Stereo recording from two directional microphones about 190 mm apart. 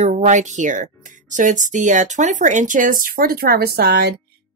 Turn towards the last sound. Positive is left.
turn(degrees=-55)  # may be behind; listen again after turning